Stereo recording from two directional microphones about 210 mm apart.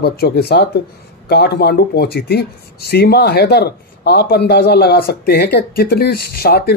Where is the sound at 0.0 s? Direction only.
50° left (ahead or behind).